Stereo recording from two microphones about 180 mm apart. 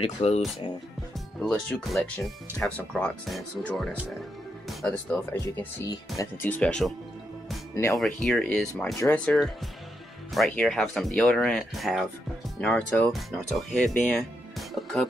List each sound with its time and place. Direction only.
0.0 s speech: 35° left (ahead or behind)
1.4 s speech: centre (ahead or behind)
7.7 s speech: 15° left (ahead or behind)
8.0 s speech: centre (ahead or behind)